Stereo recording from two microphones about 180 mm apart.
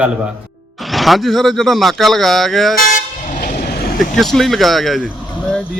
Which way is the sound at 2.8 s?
50° left (ahead or behind).